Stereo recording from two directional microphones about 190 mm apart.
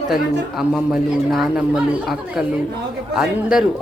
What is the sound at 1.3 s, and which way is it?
Speech, centre (ahead or behind).